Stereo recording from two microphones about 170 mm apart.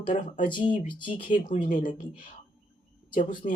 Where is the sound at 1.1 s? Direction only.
50° left (ahead or behind).